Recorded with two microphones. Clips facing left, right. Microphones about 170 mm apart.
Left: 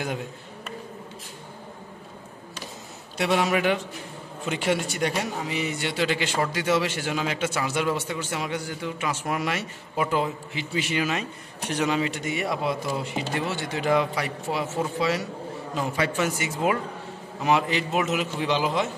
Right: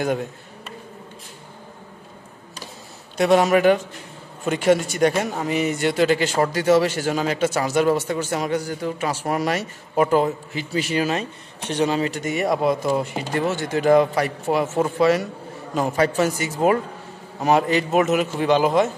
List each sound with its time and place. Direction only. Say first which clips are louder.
3.2 s speech: right 7 dB; 45° right (ahead or behind)